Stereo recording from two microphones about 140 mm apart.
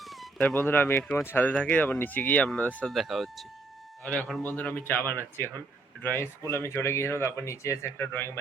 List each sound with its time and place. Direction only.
0.0 s a sound: centre (ahead or behind)
0.4 s speech: 15° left (ahead or behind)
2.9 s speech: centre (ahead or behind); by 8.3 s 15° left (ahead or behind)